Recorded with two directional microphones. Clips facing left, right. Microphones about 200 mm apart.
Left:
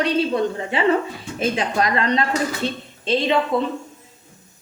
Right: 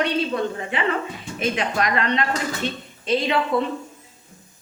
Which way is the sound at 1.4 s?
30° left (ahead or behind).